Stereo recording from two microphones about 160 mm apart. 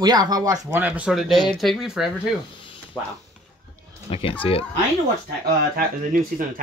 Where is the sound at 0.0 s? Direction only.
25° right (ahead or behind).